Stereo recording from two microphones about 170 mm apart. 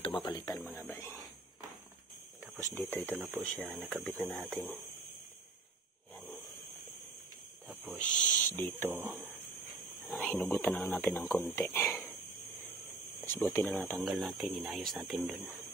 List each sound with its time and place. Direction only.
0.0 s speech: 30° left (ahead or behind)
0.7 s speech: 15° left (ahead or behind)
2.9 s speech: 10° left (ahead or behind)
3.2 s speech: 10° right (ahead or behind)
3.5 s speech: 5° left (ahead or behind)
6.1 s a sound: 10° left (ahead or behind)
7.6 s owl: 5° right (ahead or behind)
8.0 s speech: 10° left (ahead or behind)
10.0 s speech: 5° left (ahead or behind)
11.8 s a sound: centre (ahead or behind)
13.2 s speech: 15° left (ahead or behind)
13.9 s speech: centre (ahead or behind)